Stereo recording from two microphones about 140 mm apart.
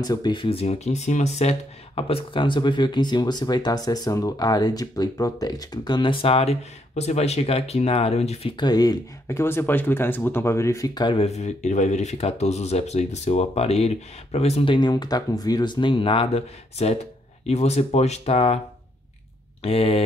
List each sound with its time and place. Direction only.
0.0 s speech: 30° left (ahead or behind)
6.2 s speech: 45° left (ahead or behind); by 11.1 s 25° left (ahead or behind)
11.1 s speech: 50° left (ahead or behind)
19.6 s speech: 45° left (ahead or behind)